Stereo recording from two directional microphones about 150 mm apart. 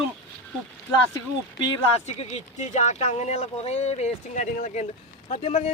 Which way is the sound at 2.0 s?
45° left (ahead or behind).